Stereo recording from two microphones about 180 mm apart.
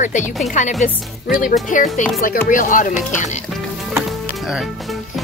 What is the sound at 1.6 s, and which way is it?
Speech, 45° left (ahead or behind).